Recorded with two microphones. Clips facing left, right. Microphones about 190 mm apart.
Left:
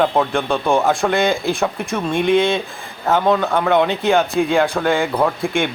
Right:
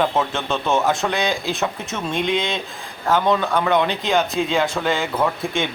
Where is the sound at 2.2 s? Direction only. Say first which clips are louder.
Left 7 dB; 20° right (ahead or behind).